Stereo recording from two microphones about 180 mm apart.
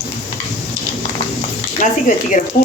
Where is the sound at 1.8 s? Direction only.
45° left (ahead or behind).